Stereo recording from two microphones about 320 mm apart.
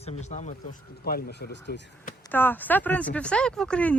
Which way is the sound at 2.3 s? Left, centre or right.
Centre.